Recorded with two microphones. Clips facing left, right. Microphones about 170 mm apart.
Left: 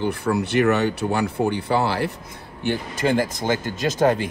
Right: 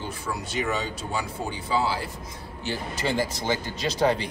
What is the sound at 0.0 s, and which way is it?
Speech, 65° left (ahead or behind).